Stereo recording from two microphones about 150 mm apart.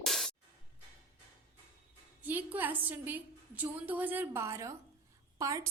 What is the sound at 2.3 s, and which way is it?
A woman's voice, 10° right (ahead or behind).